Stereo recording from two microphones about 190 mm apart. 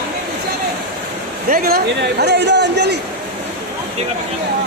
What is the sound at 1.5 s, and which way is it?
Speech, 50° right (ahead or behind).